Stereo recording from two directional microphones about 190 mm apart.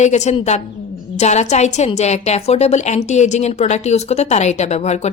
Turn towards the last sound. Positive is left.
turn(degrees=35)  # may be behind; listen again after turning